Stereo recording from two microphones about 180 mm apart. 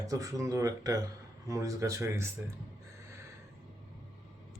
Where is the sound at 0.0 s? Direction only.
20° right (ahead or behind).